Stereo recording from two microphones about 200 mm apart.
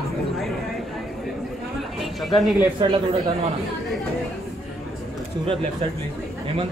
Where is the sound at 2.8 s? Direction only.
20° right (ahead or behind).